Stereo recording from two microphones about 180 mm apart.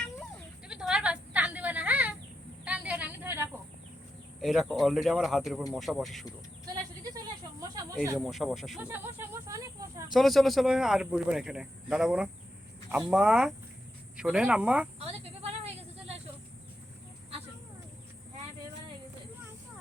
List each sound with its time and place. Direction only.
0.7 s a sound: 5° right (ahead or behind)
4.4 s speech: centre (ahead or behind)
7.6 s snake: 20° right (ahead or behind)
8.2 s speech: centre (ahead or behind); by 9.6 s 15° right (ahead or behind)
10.2 s speech: centre (ahead or behind)
14.9 s a sound: 35° right (ahead or behind)